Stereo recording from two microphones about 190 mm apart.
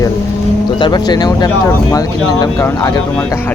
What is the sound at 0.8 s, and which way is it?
Speech, 20° left (ahead or behind).